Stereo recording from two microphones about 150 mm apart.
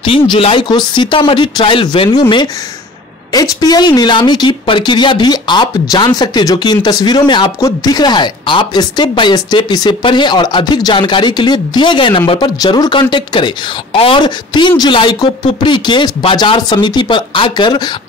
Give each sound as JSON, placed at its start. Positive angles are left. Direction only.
{"t": 0.0, "sound": "a woman's voice", "side_deg": 35}